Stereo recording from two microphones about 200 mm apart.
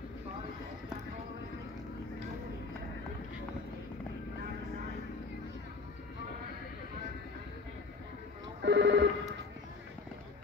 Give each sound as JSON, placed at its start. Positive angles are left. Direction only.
{"t": 8.6, "sound": "telephone bell ringing", "side_deg": -60}